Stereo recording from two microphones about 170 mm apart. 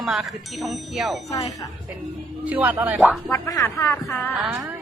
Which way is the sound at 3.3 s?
20° left (ahead or behind).